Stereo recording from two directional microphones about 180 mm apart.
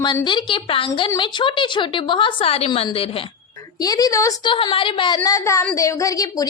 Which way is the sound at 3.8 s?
20° left (ahead or behind).